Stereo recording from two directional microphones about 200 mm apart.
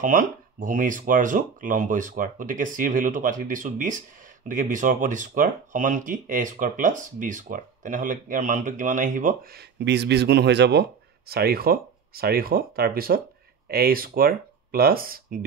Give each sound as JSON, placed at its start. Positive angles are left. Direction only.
{"t": 0.0, "sound": "speech", "side_deg": -40}